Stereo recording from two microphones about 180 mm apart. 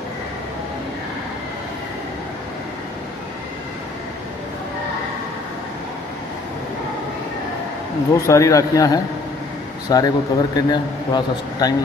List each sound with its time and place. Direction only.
8.3 s a man's voice: 20° left (ahead or behind)